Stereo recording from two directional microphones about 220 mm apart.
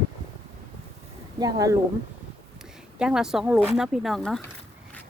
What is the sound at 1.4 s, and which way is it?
Speech, 15° right (ahead or behind).